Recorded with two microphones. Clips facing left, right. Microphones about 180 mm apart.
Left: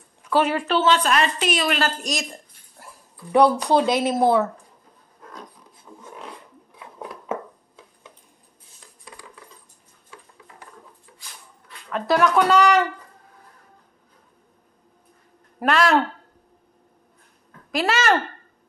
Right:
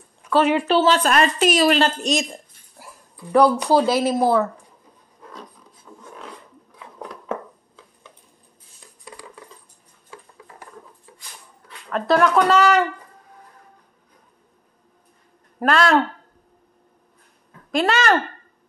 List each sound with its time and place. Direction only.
0.7 s a woman's voice: 30° right (ahead or behind)
0.9 s a woman's voice: 45° right (ahead or behind); by 2.2 s 25° right (ahead or behind)
3.3 s speech: centre (ahead or behind)
5.9 s filing: 20° left (ahead or behind)
11.9 s speech: 5° left (ahead or behind)
15.6 s speech: 5° left (ahead or behind)
17.6 s speech: 5° left (ahead or behind)